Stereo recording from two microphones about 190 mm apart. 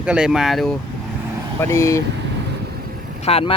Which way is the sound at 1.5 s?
15° left (ahead or behind).